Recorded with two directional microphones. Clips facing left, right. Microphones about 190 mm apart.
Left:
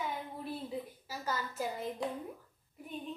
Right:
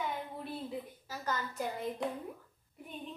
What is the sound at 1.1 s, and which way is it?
A woman's voice, 10° left (ahead or behind).